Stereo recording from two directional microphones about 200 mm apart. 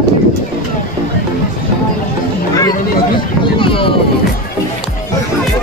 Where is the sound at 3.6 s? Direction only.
25° left (ahead or behind).